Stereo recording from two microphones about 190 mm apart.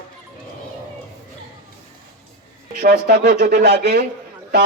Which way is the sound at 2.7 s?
55° right (ahead or behind).